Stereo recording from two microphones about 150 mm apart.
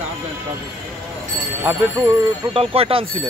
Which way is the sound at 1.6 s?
20° right (ahead or behind).